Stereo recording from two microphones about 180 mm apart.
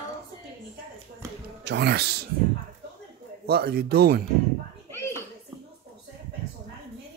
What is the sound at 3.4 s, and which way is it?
Speech, 60° right (ahead or behind).